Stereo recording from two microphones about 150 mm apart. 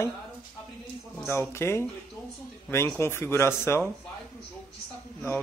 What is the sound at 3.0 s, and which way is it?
Speech, 15° left (ahead or behind).